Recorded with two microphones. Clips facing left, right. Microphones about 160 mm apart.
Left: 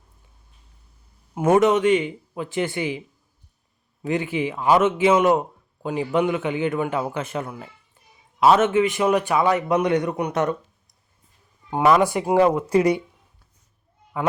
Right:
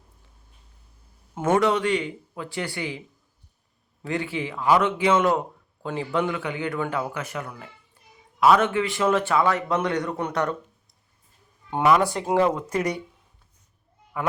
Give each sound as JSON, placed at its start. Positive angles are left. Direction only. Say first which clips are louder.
{"t": 1.4, "sound": "a man's voice", "louder": "left 4 dB", "side_deg": 20}
{"t": 4.0, "sound": "a man's voice", "louder": "left 4 dB", "side_deg": 20}
{"t": 11.8, "sound": "speech", "louder": "left 3 dB", "side_deg": 20}
{"t": 12.6, "sound": "speech", "louder": "left 8 dB", "side_deg": 30}
{"t": 14.1, "sound": "a man's voice", "louder": "left 3 dB", "side_deg": 25}